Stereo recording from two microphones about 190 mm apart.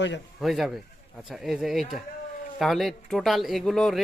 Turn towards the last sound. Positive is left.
turn(degrees=0)  # may be behind; listen again after turning